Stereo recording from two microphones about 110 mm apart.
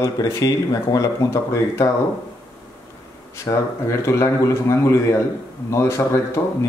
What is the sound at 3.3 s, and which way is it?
Speech, 30° left (ahead or behind).